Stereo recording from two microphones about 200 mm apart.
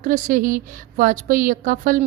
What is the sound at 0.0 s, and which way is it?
A woman's voice, 40° right (ahead or behind).